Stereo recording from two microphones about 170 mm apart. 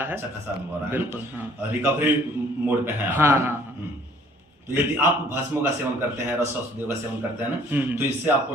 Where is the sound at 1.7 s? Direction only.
10° right (ahead or behind).